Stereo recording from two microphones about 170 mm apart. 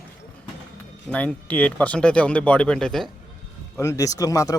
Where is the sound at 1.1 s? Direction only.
10° left (ahead or behind).